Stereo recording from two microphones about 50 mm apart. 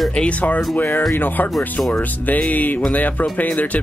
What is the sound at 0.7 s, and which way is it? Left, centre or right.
Speech, left.